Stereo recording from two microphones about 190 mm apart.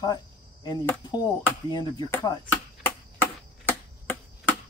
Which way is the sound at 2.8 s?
10° left (ahead or behind).